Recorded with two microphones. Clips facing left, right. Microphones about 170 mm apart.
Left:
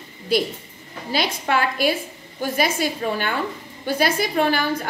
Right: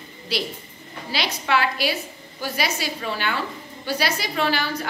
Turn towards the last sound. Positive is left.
turn(degrees=50)  # may be behind; listen again after turning